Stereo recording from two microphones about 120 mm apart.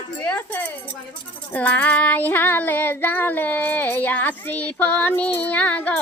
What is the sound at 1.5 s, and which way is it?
Child singing, 15° left (ahead or behind).